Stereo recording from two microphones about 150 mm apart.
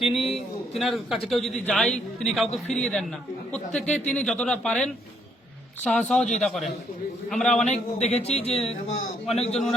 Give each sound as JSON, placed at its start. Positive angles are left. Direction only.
{"t": 0.0, "sound": "a man's voice", "side_deg": 0}
{"t": 0.3, "sound": "a sound", "side_deg": 0}
{"t": 1.3, "sound": "a man's voice", "side_deg": 0}
{"t": 7.7, "sound": "a man's voice", "side_deg": 45}